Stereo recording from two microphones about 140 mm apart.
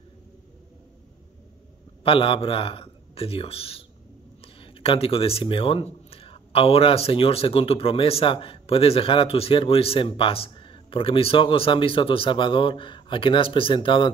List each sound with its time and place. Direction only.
2.0 s speech: 40° left (ahead or behind)